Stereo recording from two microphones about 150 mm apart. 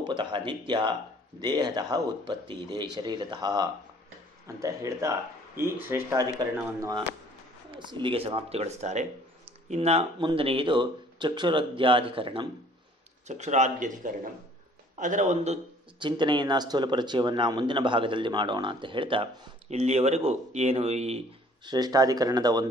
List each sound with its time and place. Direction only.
0.0 s speech: 30° right (ahead or behind)
7.8 s speech: 30° right (ahead or behind)
13.3 s speech: 50° right (ahead or behind)
16.0 s speech: 30° right (ahead or behind)
21.6 s speech: 25° right (ahead or behind)